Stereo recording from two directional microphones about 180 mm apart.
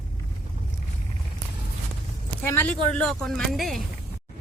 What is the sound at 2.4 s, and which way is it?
Speech, 10° left (ahead or behind).